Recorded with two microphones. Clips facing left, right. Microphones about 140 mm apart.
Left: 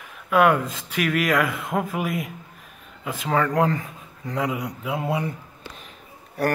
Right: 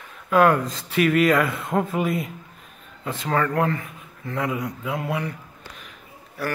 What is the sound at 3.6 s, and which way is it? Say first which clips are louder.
Speech: left 2 dB; 25° left (ahead or behind).